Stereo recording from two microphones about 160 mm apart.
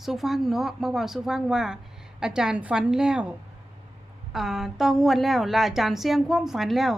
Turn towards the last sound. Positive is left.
turn(degrees=0)  # may be behind; listen again after turning